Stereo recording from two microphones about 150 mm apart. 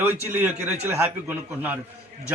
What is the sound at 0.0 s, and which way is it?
A man's voice, 15° right (ahead or behind).